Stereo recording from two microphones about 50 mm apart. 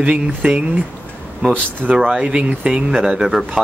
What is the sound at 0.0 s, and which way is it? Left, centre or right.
Speech, right.